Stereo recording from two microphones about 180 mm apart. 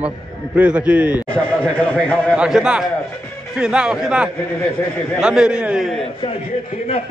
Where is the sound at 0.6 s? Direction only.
5° right (ahead or behind).